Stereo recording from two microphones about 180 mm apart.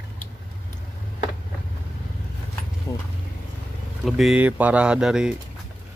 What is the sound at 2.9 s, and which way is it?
Vehicle, 15° left (ahead or behind).